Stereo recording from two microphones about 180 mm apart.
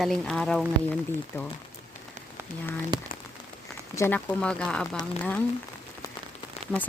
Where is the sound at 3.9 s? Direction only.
15° left (ahead or behind).